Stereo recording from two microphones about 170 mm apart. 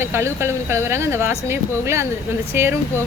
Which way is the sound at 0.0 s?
15° right (ahead or behind).